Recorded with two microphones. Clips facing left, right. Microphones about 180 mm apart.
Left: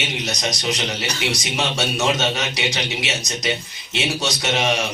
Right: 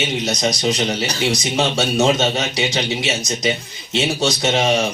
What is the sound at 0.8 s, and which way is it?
Speech, 35° right (ahead or behind).